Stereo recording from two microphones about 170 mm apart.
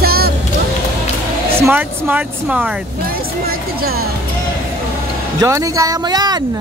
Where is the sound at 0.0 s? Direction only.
65° right (ahead or behind).